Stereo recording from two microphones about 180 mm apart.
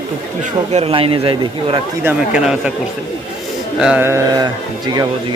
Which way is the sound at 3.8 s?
10° right (ahead or behind).